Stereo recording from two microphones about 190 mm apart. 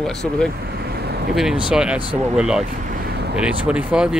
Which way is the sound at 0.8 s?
60° right (ahead or behind).